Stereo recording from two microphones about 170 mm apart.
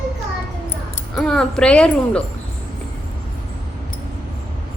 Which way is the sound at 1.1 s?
Centre (ahead or behind).